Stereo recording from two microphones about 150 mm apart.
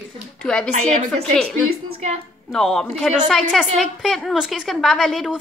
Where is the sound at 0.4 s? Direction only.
5° left (ahead or behind).